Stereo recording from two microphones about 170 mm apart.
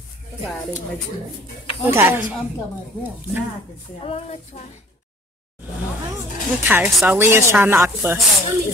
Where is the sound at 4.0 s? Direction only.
40° left (ahead or behind).